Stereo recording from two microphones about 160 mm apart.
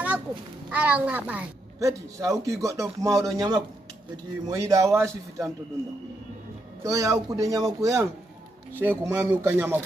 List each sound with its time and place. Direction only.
0.7 s a woman's voice: 10° right (ahead or behind)
6.8 s a woman's voice: 20° right (ahead or behind)